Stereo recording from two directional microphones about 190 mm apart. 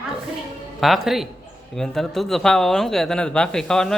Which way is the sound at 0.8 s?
Centre (ahead or behind).